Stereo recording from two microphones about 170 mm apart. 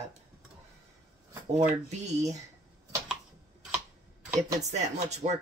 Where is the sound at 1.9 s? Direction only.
40° right (ahead or behind).